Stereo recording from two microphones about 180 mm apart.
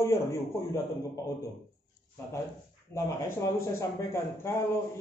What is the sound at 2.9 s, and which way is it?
Speech, 15° left (ahead or behind).